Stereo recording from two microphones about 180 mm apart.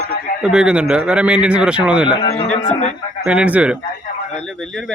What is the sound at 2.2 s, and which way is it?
Speech, 35° left (ahead or behind).